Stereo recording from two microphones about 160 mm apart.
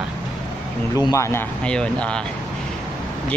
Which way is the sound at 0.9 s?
20° left (ahead or behind).